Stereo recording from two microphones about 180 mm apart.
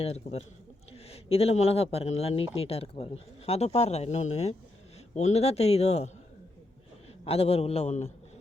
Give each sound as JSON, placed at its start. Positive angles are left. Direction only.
{"t": 0.0, "sound": "speech", "side_deg": 35}
{"t": 7.3, "sound": "speech", "side_deg": 35}